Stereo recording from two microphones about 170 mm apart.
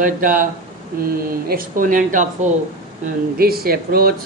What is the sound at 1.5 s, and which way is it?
Speech, 55° right (ahead or behind).